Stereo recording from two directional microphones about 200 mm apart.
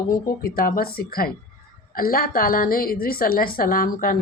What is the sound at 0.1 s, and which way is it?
Speech, 45° left (ahead or behind).